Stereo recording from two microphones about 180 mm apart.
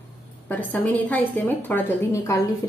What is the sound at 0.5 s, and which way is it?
A woman's voice, 10° left (ahead or behind).